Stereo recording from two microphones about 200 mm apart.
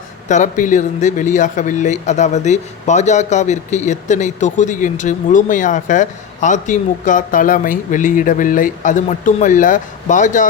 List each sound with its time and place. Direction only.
0.3 s speech: 35° left (ahead or behind)